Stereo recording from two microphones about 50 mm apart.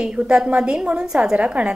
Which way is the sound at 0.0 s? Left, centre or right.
Centre.